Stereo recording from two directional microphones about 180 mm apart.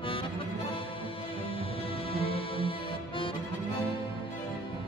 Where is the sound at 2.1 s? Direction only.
30° left (ahead or behind).